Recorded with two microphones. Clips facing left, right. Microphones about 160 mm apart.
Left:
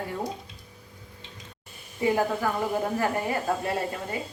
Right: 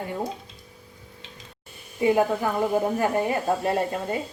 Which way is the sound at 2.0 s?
20° right (ahead or behind).